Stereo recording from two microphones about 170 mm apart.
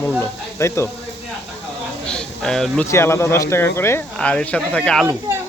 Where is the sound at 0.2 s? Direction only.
15° left (ahead or behind).